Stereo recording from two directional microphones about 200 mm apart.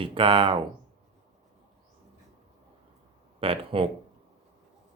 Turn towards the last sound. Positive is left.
turn(degrees=-25)  # may be behind; listen again after turning